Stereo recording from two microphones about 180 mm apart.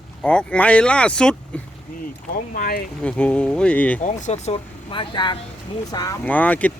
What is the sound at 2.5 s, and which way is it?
Speech, 55° left (ahead or behind).